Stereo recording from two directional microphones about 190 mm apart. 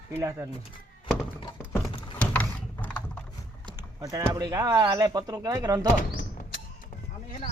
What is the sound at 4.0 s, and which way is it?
Speech, 20° right (ahead or behind).